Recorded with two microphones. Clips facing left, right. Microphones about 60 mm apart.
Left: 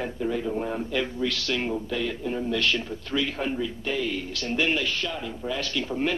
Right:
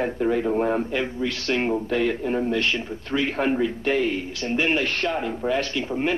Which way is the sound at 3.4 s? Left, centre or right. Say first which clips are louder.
Right 6 dB; right.